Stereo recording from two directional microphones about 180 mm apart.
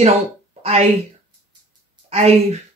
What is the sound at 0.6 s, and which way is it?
Speech, 35° right (ahead or behind).